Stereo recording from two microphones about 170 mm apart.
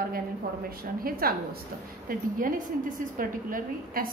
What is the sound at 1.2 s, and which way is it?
A woman's voice, 60° right (ahead or behind).